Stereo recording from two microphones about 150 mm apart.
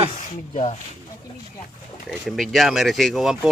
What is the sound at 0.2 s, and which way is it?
Speech, 50° left (ahead or behind).